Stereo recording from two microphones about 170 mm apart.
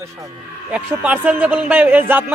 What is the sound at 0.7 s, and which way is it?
Speech, 10° right (ahead or behind).